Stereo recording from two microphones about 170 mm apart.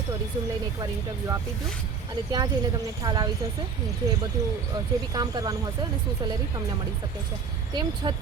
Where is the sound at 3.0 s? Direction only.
25° right (ahead or behind).